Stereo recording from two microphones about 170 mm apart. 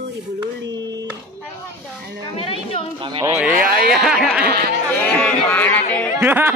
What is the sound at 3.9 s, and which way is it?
Speech, centre (ahead or behind).